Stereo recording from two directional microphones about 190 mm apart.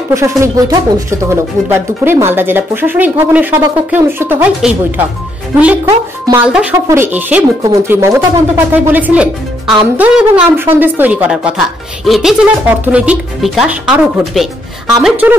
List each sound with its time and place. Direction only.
0.1 s speech: 15° right (ahead or behind)
5.9 s speech: 15° right (ahead or behind)
6.4 s speech: 5° right (ahead or behind)